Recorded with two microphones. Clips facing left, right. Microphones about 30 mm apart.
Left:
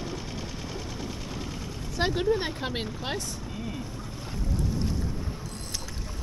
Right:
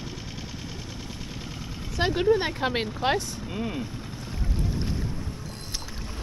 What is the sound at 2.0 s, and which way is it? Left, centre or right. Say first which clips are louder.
Speech: right 3 dB; centre.